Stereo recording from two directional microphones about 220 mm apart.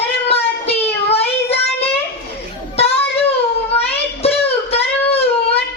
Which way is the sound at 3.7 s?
25° left (ahead or behind).